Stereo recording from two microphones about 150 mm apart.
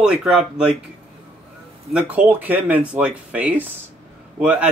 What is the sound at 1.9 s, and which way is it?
Speech, 10° right (ahead or behind).